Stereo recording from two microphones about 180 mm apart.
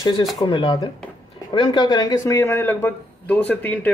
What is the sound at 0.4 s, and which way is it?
A man's voice, 30° left (ahead or behind).